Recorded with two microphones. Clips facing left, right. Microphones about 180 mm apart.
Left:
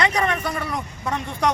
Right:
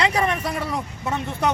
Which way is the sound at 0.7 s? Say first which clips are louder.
Right 1 dB; 5° right (ahead or behind).